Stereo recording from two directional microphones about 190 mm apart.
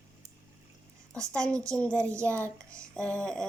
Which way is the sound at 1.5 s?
15° right (ahead or behind).